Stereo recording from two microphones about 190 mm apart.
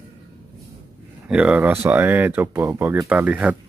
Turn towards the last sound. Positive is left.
turn(degrees=-5)  # may be behind; listen again after turning